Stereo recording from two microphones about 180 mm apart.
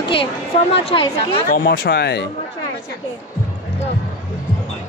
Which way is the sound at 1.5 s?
55° left (ahead or behind).